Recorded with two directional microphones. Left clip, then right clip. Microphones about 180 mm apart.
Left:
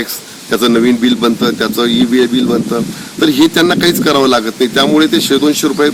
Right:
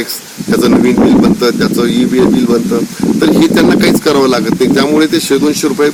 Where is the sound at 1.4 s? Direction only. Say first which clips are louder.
Right 2 dB; centre (ahead or behind).